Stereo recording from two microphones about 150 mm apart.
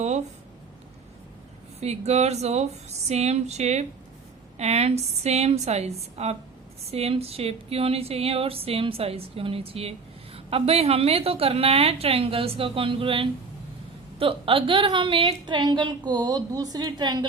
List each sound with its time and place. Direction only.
1.8 s a woman's voice: 45° right (ahead or behind); by 17.2 s 25° right (ahead or behind)